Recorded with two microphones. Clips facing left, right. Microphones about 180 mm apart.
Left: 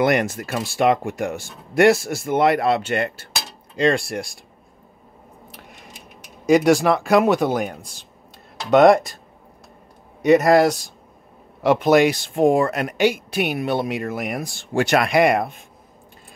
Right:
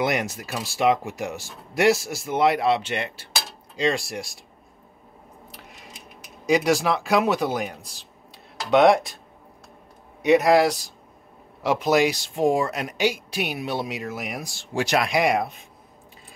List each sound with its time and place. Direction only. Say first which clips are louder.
0.0 s speech: left 6 dB; centre (ahead or behind)
5.5 s a sound: left 2 dB; centre (ahead or behind)
7.1 s speech: left 5 dB; 50° left (ahead or behind)
7.3 s speech: left 4 dB; centre (ahead or behind)
10.2 s speech: left 3 dB; centre (ahead or behind)
12.4 s speech: left 4 dB; 55° left (ahead or behind)
14.0 s speech: left 5 dB; centre (ahead or behind)